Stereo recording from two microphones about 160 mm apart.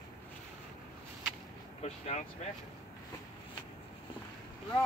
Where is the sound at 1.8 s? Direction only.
40° left (ahead or behind).